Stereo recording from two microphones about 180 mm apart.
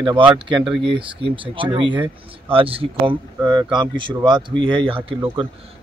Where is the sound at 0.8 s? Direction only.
30° right (ahead or behind).